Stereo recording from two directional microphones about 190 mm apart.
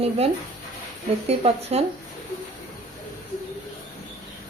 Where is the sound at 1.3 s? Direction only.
30° right (ahead or behind).